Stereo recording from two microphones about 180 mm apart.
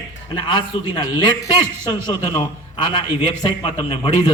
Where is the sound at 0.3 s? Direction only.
25° left (ahead or behind).